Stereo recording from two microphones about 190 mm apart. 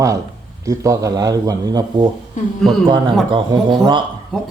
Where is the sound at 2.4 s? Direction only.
40° left (ahead or behind).